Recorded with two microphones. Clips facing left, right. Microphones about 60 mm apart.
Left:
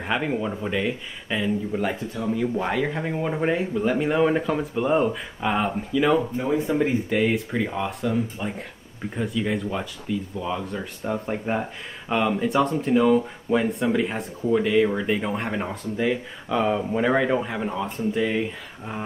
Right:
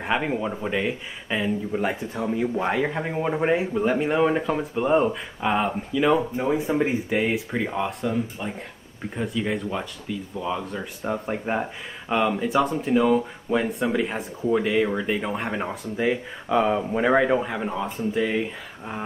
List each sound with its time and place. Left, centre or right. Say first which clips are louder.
0.0 s speech: even; centre
6.3 s speech: even; centre